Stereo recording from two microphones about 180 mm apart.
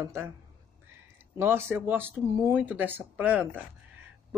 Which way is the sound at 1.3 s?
10° right (ahead or behind).